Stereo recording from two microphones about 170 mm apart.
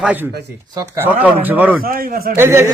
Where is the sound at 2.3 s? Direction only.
15° right (ahead or behind).